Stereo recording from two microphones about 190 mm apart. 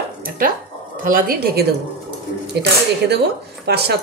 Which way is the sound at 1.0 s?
50° right (ahead or behind).